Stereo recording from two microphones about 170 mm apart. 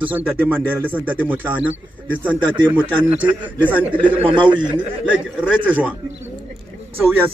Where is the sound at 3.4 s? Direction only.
10° right (ahead or behind).